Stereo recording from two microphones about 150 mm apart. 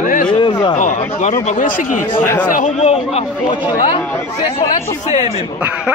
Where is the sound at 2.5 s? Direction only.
60° left (ahead or behind).